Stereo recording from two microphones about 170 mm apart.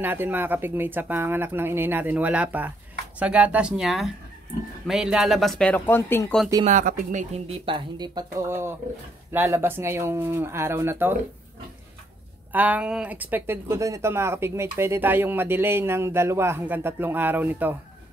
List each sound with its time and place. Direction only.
0.0 s speech: 10° right (ahead or behind); by 6.3 s 15° left (ahead or behind)
6.6 s speech: 50° right (ahead or behind); by 11.1 s 15° right (ahead or behind)
12.5 s speech: 10° right (ahead or behind)